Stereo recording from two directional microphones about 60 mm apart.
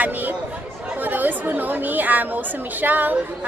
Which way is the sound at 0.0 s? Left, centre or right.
Right.